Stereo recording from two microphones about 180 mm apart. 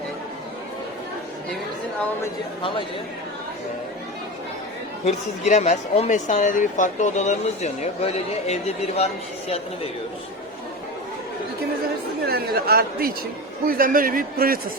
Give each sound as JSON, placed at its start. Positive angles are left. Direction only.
{"t": 2.6, "sound": "speech", "side_deg": 30}
{"t": 5.0, "sound": "a woman's voice", "side_deg": 40}
{"t": 12.2, "sound": "a man's voice", "side_deg": -60}